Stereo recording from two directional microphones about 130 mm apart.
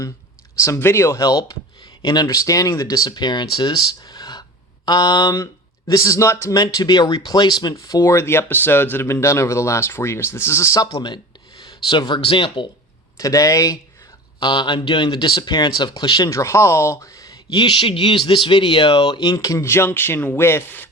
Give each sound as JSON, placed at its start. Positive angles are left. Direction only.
{"t": 0.6, "sound": "speech", "side_deg": 20}
{"t": 13.1, "sound": "speech", "side_deg": 25}